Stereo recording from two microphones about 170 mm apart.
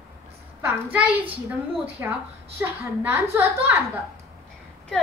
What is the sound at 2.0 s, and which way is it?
A woman's voice, 15° right (ahead or behind).